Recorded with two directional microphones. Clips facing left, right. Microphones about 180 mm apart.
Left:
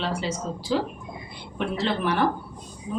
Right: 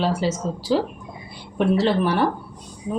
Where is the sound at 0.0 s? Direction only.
40° right (ahead or behind).